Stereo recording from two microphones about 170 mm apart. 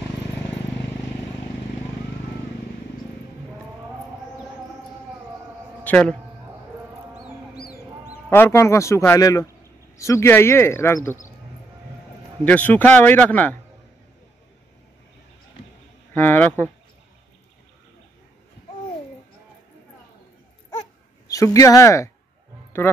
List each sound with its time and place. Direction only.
5.9 s a man's voice: 5° left (ahead or behind)
8.3 s a man's voice: 15° left (ahead or behind)
12.4 s a man's voice: 10° left (ahead or behind)
16.1 s a man's voice: 10° left (ahead or behind)
21.3 s a man's voice: 20° left (ahead or behind)